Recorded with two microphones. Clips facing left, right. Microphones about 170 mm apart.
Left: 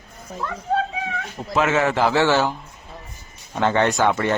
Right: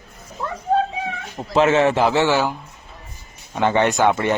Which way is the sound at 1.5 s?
25° right (ahead or behind).